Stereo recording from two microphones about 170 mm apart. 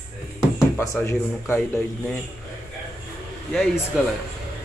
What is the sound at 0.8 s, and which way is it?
Speech, 15° left (ahead or behind).